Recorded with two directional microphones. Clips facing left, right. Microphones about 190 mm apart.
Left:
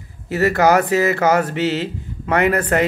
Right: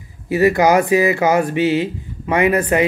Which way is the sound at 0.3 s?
15° right (ahead or behind).